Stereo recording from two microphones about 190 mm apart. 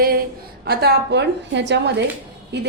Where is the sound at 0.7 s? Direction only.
60° right (ahead or behind).